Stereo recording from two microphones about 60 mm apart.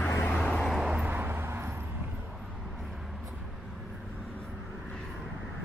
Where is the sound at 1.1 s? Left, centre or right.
Right.